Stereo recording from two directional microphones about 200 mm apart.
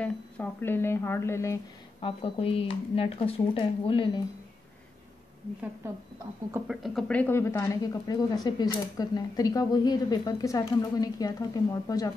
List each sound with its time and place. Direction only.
0.0 s speech: 10° left (ahead or behind)
2.0 s speech: 25° left (ahead or behind)
6.5 s speech: centre (ahead or behind); by 12.1 s 15° left (ahead or behind)